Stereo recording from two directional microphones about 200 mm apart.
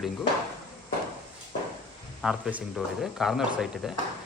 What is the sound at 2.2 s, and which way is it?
Speech, centre (ahead or behind).